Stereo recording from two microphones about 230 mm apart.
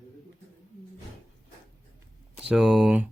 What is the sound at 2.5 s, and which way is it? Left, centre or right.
Speech, centre.